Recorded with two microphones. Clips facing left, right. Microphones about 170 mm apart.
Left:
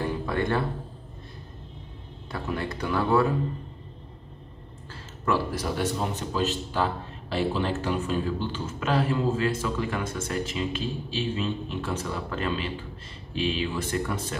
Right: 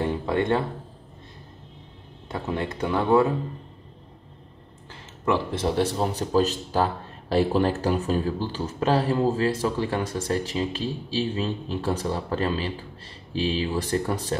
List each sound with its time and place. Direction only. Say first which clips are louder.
0.0 s music: right 3 dB; 25° right (ahead or behind)
2.2 s speech: right 2 dB; 20° right (ahead or behind)
5.2 s a man's voice: right 3 dB; 25° right (ahead or behind)